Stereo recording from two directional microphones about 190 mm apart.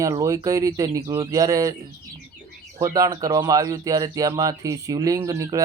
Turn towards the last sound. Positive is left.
turn(degrees=-20)  # may be behind; listen again after turning